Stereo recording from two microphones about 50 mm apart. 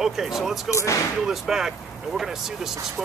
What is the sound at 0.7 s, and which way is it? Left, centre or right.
Speech, left.